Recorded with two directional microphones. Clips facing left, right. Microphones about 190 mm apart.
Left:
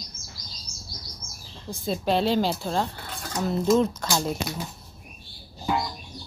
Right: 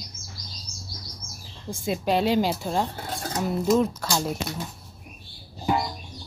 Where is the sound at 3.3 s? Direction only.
10° right (ahead or behind).